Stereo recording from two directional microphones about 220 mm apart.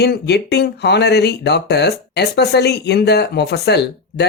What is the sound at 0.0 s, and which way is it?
Speech, 50° left (ahead or behind).